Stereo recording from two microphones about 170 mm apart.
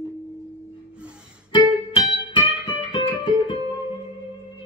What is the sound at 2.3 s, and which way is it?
Music, 30° left (ahead or behind).